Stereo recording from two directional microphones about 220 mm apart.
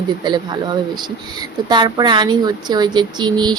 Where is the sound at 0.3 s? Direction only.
20° right (ahead or behind).